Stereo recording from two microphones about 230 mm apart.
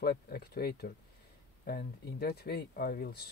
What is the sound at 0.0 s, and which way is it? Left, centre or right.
Speech, left.